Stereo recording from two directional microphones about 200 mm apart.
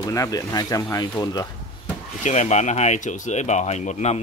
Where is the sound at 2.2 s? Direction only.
35° left (ahead or behind).